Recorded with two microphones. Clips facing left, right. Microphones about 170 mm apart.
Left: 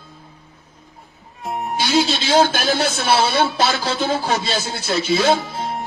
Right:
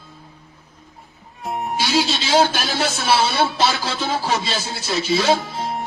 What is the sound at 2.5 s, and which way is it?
Speech, 45° left (ahead or behind).